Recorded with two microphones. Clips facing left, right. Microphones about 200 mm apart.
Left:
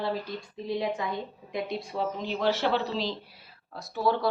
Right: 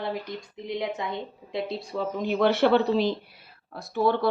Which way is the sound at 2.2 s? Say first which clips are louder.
Right 7 dB; 55° right (ahead or behind).